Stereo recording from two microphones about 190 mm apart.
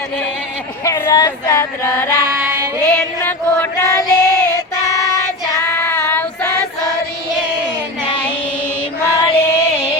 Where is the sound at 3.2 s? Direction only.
10° left (ahead or behind).